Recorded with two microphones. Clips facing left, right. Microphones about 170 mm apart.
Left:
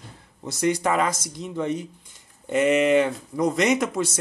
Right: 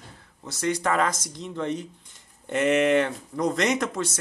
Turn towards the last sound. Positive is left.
turn(degrees=10)  # may be behind; listen again after turning